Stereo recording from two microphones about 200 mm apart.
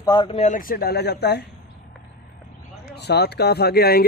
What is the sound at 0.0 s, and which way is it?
Speech, 20° left (ahead or behind).